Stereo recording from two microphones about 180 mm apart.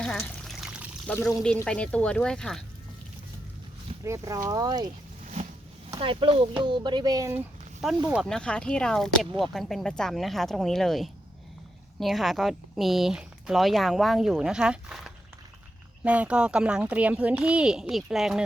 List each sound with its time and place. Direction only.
0.0 s trickle: 5° left (ahead or behind)
1.0 s speech: 5° left (ahead or behind)
4.0 s speech: 15° right (ahead or behind)
6.0 s speech: 30° right (ahead or behind)
7.8 s speech: 5° right (ahead or behind)